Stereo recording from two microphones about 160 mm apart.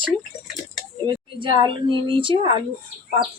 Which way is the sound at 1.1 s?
30° right (ahead or behind).